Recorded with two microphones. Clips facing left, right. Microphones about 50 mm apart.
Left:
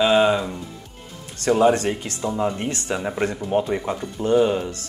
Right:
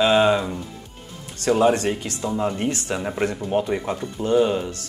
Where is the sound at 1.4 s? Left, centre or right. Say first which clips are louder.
Left 1 dB; left.